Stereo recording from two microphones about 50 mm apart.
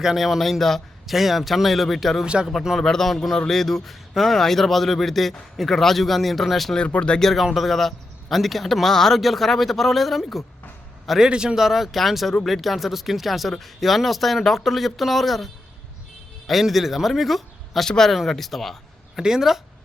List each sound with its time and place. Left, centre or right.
0.0 s a man's voice: centre
2.2 s speech: centre
2.7 s a man's voice: centre
6.7 s speech: left
7.5 s a man's voice: centre
11.2 s a man's voice: centre
16.5 s a man's voice: centre
19.2 s speech: centre